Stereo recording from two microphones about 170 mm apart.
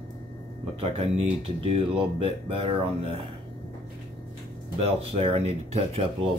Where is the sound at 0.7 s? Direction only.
35° right (ahead or behind).